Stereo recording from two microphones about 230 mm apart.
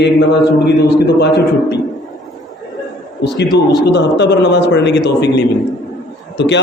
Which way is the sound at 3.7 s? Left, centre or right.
Left.